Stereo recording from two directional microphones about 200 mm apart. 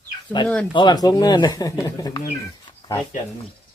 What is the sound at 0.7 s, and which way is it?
Speech, 20° left (ahead or behind).